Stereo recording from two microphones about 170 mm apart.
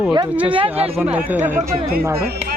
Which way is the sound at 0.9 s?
10° right (ahead or behind).